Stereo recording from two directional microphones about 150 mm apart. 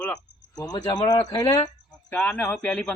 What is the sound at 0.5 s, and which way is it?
Speech, 25° left (ahead or behind).